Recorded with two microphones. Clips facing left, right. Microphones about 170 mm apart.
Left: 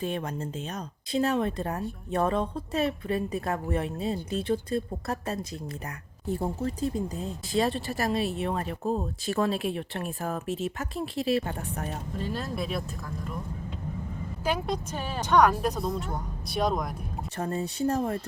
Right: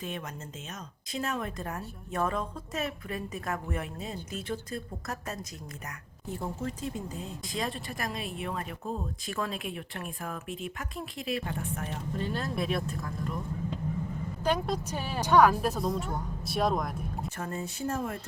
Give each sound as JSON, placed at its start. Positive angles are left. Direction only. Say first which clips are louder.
{"t": 1.1, "sound": "a woman's voice", "louder": "left 8 dB", "side_deg": 30}
{"t": 12.1, "sound": "speech", "louder": "right 1 dB", "side_deg": 0}
{"t": 14.4, "sound": "speech", "louder": "even", "side_deg": 5}
{"t": 14.9, "sound": "speech", "louder": "even", "side_deg": -10}
{"t": 17.3, "sound": "speech", "louder": "left 5 dB", "side_deg": 35}